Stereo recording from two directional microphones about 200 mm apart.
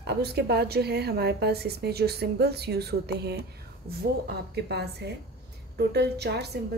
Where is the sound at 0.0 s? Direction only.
55° right (ahead or behind).